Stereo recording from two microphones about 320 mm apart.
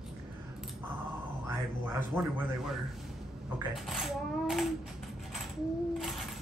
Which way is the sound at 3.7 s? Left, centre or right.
Centre.